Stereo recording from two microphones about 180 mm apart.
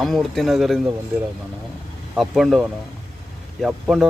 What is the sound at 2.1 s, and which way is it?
Speech, centre (ahead or behind).